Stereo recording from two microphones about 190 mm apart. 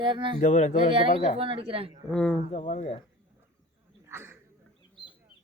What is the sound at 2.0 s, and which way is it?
Speech, 5° left (ahead or behind).